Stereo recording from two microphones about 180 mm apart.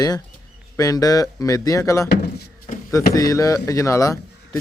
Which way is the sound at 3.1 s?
20° left (ahead or behind).